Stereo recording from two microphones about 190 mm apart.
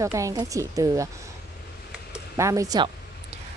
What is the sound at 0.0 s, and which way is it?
A woman's voice, 15° right (ahead or behind).